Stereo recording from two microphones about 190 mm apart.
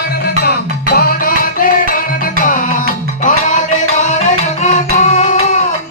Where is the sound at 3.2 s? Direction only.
40° left (ahead or behind).